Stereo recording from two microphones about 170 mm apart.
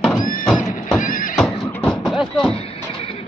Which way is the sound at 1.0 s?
50° left (ahead or behind).